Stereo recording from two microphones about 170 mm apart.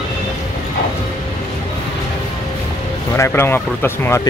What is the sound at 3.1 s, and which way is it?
Speech, 15° left (ahead or behind).